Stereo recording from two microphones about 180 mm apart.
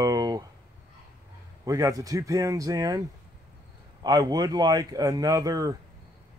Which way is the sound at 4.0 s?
20° right (ahead or behind).